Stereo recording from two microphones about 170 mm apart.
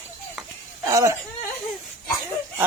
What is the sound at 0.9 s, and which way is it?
Speech, 20° right (ahead or behind).